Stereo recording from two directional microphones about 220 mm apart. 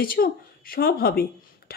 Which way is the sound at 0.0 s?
40° left (ahead or behind).